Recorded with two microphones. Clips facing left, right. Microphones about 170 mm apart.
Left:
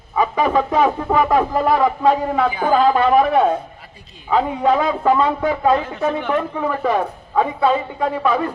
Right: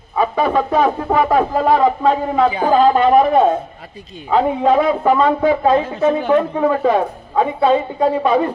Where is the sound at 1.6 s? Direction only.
25° right (ahead or behind).